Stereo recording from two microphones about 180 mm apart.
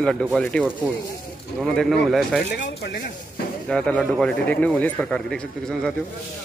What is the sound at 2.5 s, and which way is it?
Speech, 70° left (ahead or behind).